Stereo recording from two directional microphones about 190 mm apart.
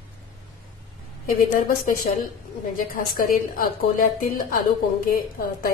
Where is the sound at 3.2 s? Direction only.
45° left (ahead or behind).